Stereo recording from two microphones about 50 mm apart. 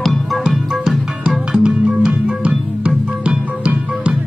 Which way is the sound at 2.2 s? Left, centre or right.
Right.